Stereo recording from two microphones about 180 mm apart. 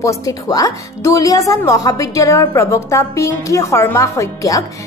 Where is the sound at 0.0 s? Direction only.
20° left (ahead or behind).